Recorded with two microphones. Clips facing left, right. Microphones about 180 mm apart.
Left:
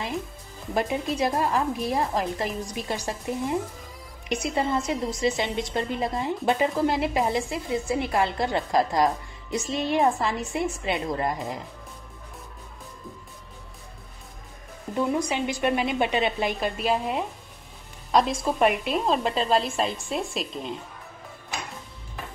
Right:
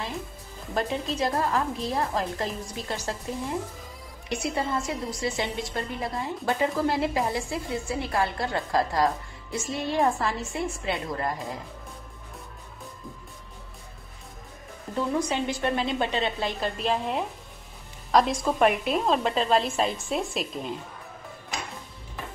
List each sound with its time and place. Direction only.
0.7 s a woman's voice: 15° left (ahead or behind)
15.0 s a woman's voice: 15° left (ahead or behind)